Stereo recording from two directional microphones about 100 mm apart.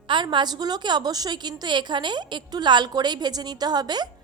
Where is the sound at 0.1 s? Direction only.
50° right (ahead or behind).